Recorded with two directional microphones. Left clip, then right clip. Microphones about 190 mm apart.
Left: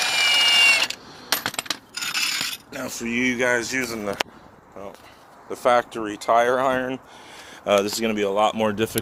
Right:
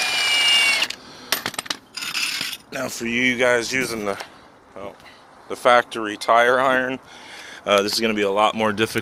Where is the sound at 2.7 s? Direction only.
50° right (ahead or behind); by 3.6 s 25° right (ahead or behind).